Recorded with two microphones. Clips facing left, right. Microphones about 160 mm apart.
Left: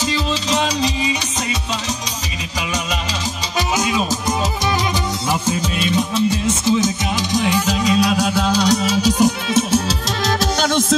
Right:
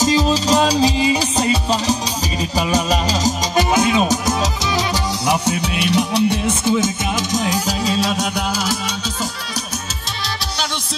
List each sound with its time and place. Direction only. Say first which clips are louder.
0.0 s music: right 5 dB; 40° right (ahead or behind)
3.3 s music: right 5 dB; 50° right (ahead or behind); by 8.3 s 30° right (ahead or behind)
8.4 s music: left 5 dB; 10° right (ahead or behind)
9.0 s music: left 10 dB; 20° left (ahead or behind)
10.6 s music: left 10 dB; 50° left (ahead or behind)